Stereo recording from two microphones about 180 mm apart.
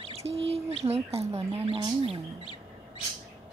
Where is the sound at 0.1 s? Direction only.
35° right (ahead or behind).